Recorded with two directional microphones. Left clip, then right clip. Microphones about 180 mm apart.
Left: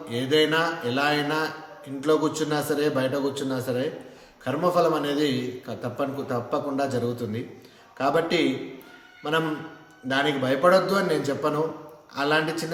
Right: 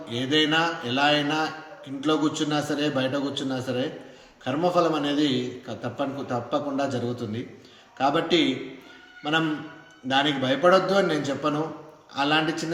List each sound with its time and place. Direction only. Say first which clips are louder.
0.1 s a man's voice: left 1 dB; 15° left (ahead or behind)
10.1 s a man's voice: right 1 dB; 15° left (ahead or behind)